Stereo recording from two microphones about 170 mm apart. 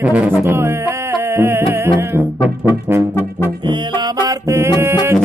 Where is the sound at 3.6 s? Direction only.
25° right (ahead or behind).